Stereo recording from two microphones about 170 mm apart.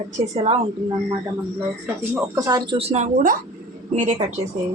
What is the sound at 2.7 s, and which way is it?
Speech, 40° right (ahead or behind).